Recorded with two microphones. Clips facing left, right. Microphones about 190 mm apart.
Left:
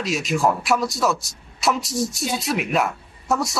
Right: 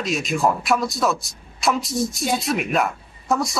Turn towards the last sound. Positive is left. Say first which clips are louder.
# right 1 dB
turn(degrees=0)  # may be behind; listen again after turning